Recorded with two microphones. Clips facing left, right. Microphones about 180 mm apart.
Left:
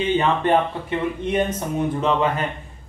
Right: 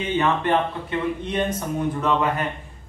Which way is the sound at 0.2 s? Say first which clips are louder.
Left 2 dB; 25° left (ahead or behind).